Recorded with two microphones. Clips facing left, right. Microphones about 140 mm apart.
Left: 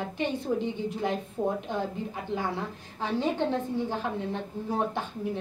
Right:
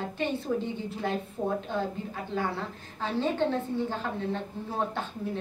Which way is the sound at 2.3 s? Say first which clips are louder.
Right 1 dB; 15° left (ahead or behind).